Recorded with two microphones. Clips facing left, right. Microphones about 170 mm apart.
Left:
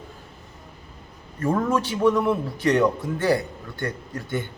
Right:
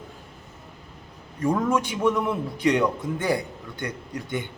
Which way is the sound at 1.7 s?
15° right (ahead or behind).